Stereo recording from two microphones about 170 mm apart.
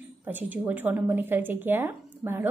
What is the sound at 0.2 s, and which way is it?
Speech, 10° right (ahead or behind).